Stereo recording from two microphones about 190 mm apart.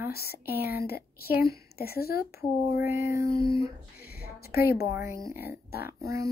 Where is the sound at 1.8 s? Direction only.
55° left (ahead or behind).